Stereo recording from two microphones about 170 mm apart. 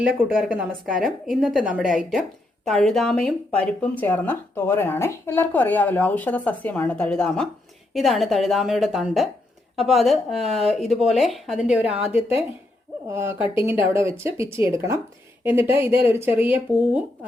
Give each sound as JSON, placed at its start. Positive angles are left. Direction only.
{"t": 0.0, "sound": "speech", "side_deg": -10}